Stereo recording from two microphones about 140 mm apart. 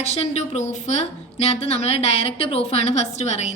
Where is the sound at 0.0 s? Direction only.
50° left (ahead or behind).